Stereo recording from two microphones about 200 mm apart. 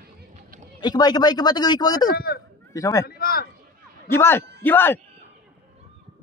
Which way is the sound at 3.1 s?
50° left (ahead or behind).